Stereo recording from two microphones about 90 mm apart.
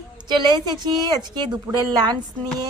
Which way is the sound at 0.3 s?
55° right (ahead or behind).